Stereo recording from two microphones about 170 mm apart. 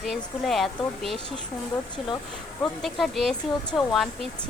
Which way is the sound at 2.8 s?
Centre (ahead or behind).